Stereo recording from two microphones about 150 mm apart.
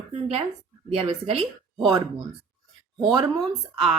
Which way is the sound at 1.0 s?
40° right (ahead or behind).